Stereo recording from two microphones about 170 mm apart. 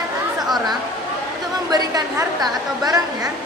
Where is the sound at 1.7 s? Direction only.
20° right (ahead or behind).